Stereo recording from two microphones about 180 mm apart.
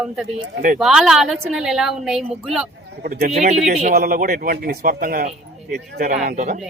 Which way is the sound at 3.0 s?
55° right (ahead or behind).